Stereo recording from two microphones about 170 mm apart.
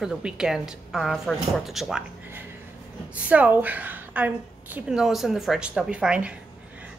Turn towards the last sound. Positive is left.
turn(degrees=-5)  # may be behind; listen again after turning